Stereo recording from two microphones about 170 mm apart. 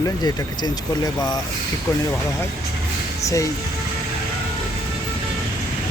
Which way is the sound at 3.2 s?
20° left (ahead or behind).